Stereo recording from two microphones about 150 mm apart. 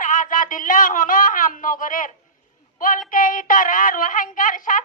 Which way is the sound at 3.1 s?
65° left (ahead or behind).